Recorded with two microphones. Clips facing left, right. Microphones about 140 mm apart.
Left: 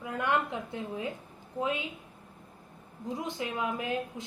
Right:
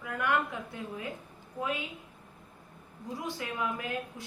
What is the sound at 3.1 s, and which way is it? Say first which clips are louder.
A woman's voice: left 2 dB; 20° left (ahead or behind).